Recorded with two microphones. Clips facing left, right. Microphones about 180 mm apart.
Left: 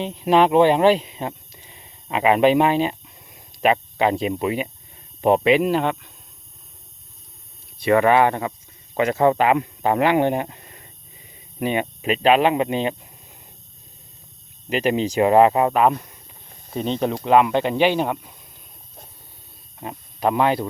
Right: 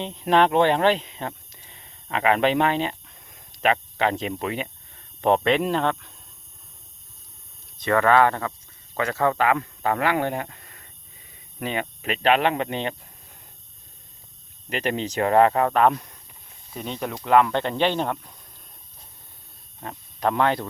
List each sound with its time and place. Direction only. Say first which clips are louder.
0.0 s speech: left 3 dB; 10° left (ahead or behind)
7.8 s speech: left 3 dB; 15° left (ahead or behind)
14.8 s speech: left 6 dB; 10° left (ahead or behind)
16.7 s speech: left 8 dB; 25° left (ahead or behind); by 18.3 s 5° left (ahead or behind)
19.8 s speech: left 3 dB; 15° left (ahead or behind)